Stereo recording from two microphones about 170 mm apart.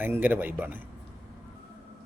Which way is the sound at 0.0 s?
10° right (ahead or behind).